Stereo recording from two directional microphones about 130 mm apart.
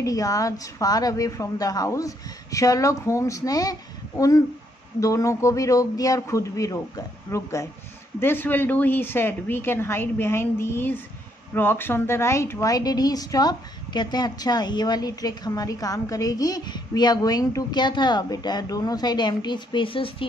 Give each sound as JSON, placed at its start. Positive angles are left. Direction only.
{"t": 0.0, "sound": "a woman's voice", "side_deg": 25}
{"t": 5.0, "sound": "a woman's voice", "side_deg": 25}